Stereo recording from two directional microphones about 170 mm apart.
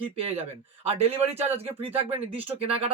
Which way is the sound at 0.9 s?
35° right (ahead or behind).